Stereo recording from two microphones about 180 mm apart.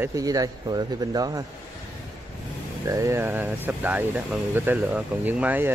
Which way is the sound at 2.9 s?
15° right (ahead or behind).